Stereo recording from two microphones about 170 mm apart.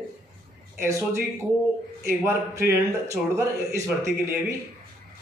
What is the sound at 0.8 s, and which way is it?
Speech, 15° right (ahead or behind).